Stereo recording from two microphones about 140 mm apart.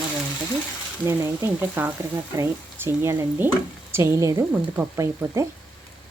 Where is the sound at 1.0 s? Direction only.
15° right (ahead or behind).